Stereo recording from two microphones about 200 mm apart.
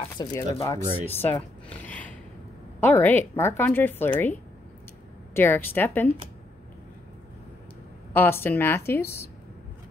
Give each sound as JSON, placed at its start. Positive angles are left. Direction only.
{"t": 0.0, "sound": "a sound", "side_deg": 20}
{"t": 0.6, "sound": "speech", "side_deg": 15}
{"t": 8.1, "sound": "speech", "side_deg": 10}